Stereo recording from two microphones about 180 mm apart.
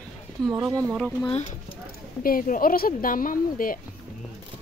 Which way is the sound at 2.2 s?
50° left (ahead or behind).